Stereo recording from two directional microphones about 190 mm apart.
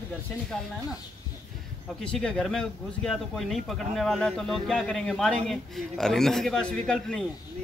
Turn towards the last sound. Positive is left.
turn(degrees=5)  # may be behind; listen again after turning